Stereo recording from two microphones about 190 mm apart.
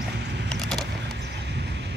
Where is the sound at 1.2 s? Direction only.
65° right (ahead or behind).